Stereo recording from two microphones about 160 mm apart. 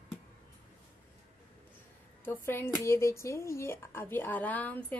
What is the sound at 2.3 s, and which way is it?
Speech, 15° left (ahead or behind).